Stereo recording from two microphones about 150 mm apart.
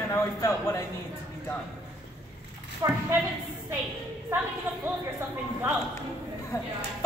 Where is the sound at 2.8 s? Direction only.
25° right (ahead or behind).